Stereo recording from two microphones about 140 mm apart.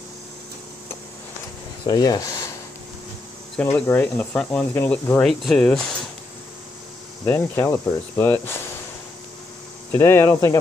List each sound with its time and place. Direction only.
1.9 s speech: 25° left (ahead or behind)
3.6 s speech: 20° left (ahead or behind)
5.2 s speech: centre (ahead or behind)
7.2 s speech: 20° left (ahead or behind)
9.9 s speech: 15° left (ahead or behind)